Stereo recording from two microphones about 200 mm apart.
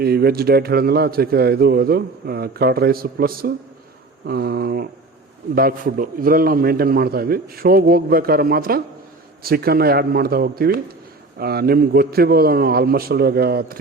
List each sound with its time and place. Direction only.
0.0 s a man's voice: 50° right (ahead or behind)